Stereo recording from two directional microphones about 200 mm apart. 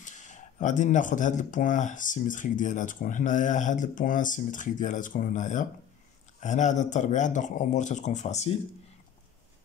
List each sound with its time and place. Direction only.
0.0 s speech: 40° left (ahead or behind)